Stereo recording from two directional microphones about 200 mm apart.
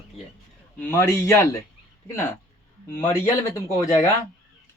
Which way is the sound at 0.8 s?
10° left (ahead or behind).